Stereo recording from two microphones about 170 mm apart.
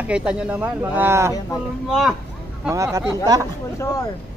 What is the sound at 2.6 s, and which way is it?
Speech, 20° right (ahead or behind).